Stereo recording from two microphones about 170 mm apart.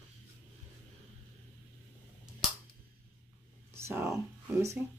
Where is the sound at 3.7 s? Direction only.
15° right (ahead or behind).